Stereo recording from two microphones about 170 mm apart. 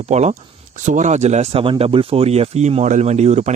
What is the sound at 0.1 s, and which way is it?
Speech, 40° right (ahead or behind).